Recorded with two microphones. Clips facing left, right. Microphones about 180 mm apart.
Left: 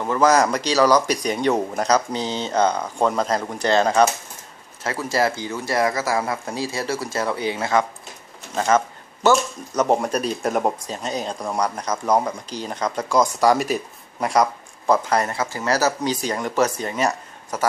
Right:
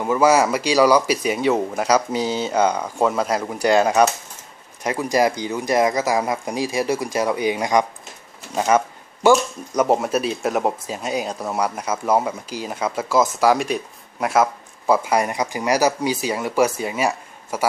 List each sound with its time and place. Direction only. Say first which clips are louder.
0.0 s speech: right 1 dB; 10° right (ahead or behind)
8.5 s a sound: right 1 dB; 10° right (ahead or behind)
9.3 s speech: right 3 dB; 5° right (ahead or behind)